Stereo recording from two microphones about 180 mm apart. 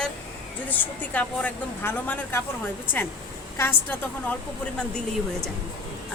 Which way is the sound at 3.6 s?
10° left (ahead or behind).